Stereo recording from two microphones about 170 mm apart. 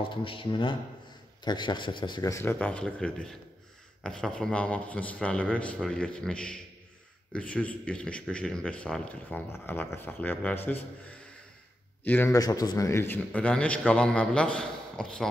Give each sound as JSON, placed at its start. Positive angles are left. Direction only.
{"t": 0.1, "sound": "a man's voice", "side_deg": 30}